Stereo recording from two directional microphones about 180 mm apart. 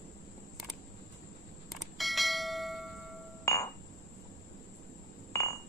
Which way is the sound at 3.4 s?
15° left (ahead or behind).